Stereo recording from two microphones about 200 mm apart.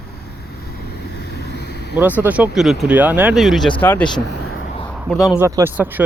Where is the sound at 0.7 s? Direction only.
50° left (ahead or behind).